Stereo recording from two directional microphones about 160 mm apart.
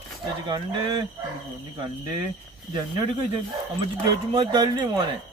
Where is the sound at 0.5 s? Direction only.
30° right (ahead or behind).